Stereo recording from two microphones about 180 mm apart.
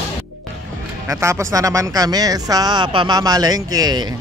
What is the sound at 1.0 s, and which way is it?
Speech, 15° right (ahead or behind).